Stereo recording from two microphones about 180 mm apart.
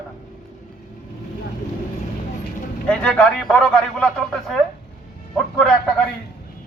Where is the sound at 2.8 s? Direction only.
5° left (ahead or behind).